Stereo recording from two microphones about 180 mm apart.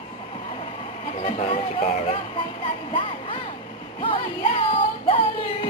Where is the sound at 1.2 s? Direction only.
30° left (ahead or behind).